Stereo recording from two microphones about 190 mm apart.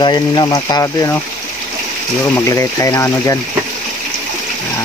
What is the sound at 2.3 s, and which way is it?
Speech, 15° left (ahead or behind).